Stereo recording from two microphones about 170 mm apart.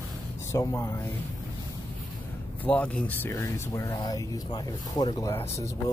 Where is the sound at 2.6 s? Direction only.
10° left (ahead or behind).